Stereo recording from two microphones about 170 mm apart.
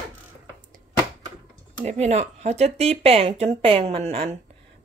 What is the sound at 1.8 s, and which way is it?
Speech, 40° right (ahead or behind).